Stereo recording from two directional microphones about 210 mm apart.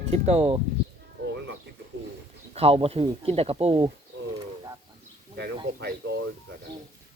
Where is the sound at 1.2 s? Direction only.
55° right (ahead or behind).